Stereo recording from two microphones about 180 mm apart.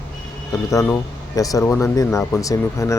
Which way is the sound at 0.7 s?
15° left (ahead or behind).